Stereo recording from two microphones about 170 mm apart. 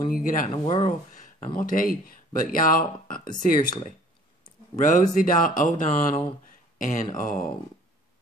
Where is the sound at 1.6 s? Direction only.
55° left (ahead or behind).